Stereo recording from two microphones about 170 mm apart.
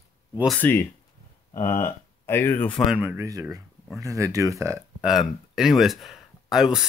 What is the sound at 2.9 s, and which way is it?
Speech, 10° right (ahead or behind).